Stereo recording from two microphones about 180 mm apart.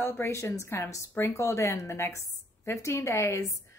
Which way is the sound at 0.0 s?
15° left (ahead or behind).